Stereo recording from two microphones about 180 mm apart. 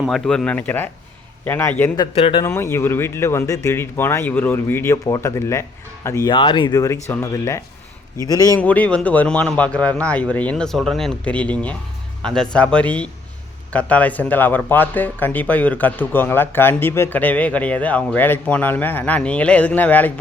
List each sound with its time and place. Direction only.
0.0 s speech: 5° left (ahead or behind)
2.1 s speech: 30° left (ahead or behind)
2.4 s speech: 15° left (ahead or behind)
6.3 s speech: 25° left (ahead or behind)
8.5 s speech: 10° left (ahead or behind)